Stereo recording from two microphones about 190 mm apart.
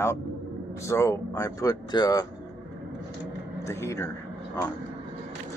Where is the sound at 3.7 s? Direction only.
15° left (ahead or behind).